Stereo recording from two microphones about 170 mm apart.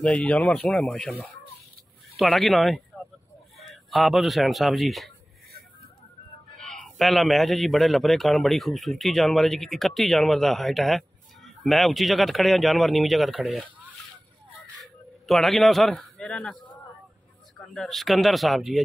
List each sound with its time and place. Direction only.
0.0 s a man's voice: 5° left (ahead or behind)
2.1 s a man's voice: centre (ahead or behind)
6.6 s a man's voice: 5° left (ahead or behind)
14.8 s speech: centre (ahead or behind)
17.7 s a man's voice: centre (ahead or behind)